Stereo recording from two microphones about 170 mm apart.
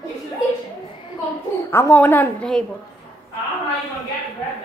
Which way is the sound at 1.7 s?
15° left (ahead or behind).